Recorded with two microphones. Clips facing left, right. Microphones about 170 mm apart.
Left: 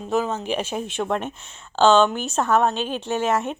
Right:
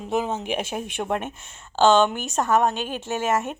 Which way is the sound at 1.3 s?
50° right (ahead or behind).